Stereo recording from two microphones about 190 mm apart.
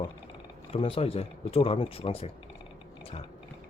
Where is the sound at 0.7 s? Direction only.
30° left (ahead or behind).